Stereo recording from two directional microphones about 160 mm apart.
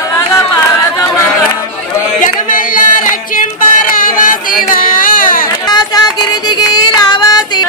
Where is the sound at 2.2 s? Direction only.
55° left (ahead or behind).